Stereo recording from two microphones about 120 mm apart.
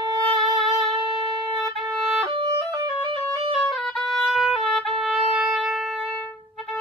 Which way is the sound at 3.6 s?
Centre (ahead or behind).